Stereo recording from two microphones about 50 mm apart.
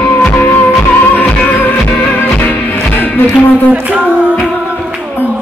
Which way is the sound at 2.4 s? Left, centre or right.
Left.